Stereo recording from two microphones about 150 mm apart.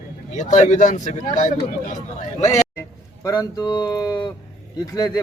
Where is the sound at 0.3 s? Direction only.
55° left (ahead or behind).